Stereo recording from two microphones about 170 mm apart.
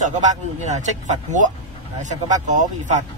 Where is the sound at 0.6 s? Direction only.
45° right (ahead or behind).